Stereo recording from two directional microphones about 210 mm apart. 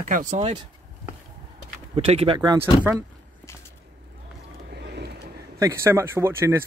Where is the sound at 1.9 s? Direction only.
30° right (ahead or behind).